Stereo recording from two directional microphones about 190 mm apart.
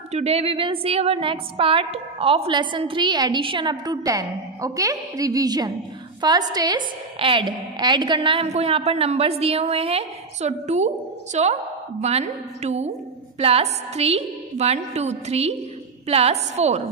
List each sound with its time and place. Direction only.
0.1 s a woman's voice: 35° right (ahead or behind)